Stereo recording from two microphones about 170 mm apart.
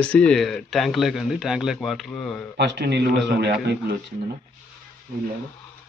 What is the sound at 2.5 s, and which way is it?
Speech, 90° right.